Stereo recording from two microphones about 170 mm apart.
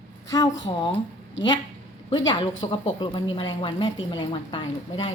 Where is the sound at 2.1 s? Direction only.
30° left (ahead or behind).